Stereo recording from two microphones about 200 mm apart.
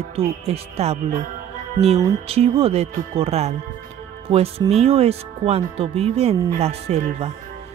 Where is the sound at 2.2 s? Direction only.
30° right (ahead or behind).